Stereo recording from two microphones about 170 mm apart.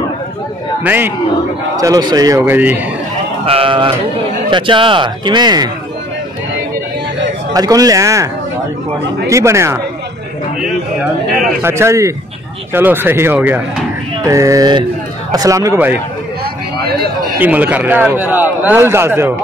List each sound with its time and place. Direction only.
0.8 s a man's voice: 10° right (ahead or behind)
1.8 s speech: 20° right (ahead or behind)
3.4 s speech: 30° right (ahead or behind)
7.5 s speech: 20° right (ahead or behind)
9.3 s a man's voice: 15° right (ahead or behind)
11.6 s a man's voice: 15° right (ahead or behind)
16.7 s a sound: 70° right (ahead or behind)
17.4 s a man's voice: 10° right (ahead or behind)